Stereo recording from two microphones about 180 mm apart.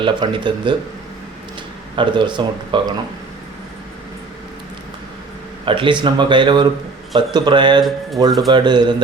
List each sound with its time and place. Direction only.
0.0 s speech: 25° right (ahead or behind)
2.0 s speech: 25° right (ahead or behind)
5.6 s speech: 30° right (ahead or behind)